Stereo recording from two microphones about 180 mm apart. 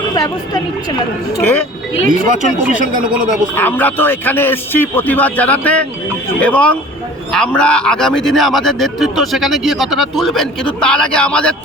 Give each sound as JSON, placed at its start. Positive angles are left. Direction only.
{"t": 0.1, "sound": "a man's voice", "side_deg": 20}
{"t": 3.5, "sound": "a man's voice", "side_deg": 10}